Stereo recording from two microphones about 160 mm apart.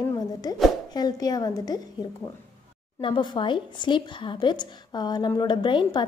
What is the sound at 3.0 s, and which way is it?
A woman's voice, 30° left (ahead or behind).